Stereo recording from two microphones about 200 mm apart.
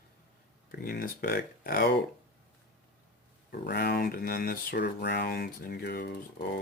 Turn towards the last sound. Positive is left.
turn(degrees=50)  # may be behind; listen again after turning